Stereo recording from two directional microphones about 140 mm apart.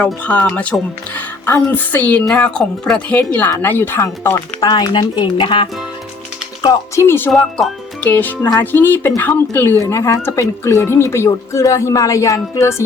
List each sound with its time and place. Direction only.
0.0 s speech: 10° left (ahead or behind)
4.7 s speech: 30° left (ahead or behind)
6.6 s speech: 20° left (ahead or behind)
7.3 s speech: 5° left (ahead or behind); by 12.7 s 20° left (ahead or behind)